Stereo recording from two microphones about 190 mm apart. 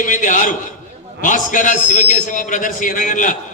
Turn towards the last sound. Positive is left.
turn(degrees=45)  # may be behind; listen again after turning